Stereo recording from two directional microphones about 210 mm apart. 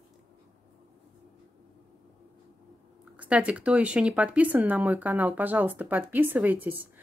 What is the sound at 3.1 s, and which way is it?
Speech, 5° right (ahead or behind).